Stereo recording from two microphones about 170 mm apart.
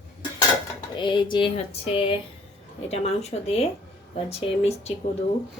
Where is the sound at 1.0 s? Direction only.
30° left (ahead or behind).